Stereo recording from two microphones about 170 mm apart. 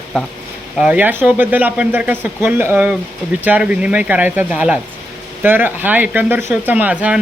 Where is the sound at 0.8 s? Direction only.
10° right (ahead or behind).